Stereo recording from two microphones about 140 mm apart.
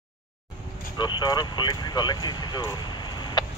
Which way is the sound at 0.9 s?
30° left (ahead or behind).